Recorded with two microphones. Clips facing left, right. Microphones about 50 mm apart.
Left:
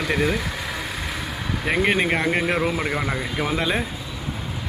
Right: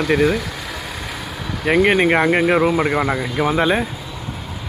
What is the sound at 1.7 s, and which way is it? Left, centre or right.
Speech, centre.